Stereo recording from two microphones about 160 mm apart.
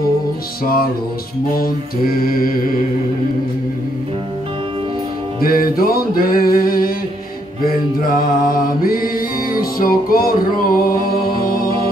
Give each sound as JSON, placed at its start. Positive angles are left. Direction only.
{"t": 1.5, "sound": "mantra", "side_deg": 65}
{"t": 5.4, "sound": "music", "side_deg": 65}